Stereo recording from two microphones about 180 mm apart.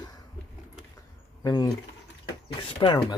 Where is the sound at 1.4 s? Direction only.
20° left (ahead or behind).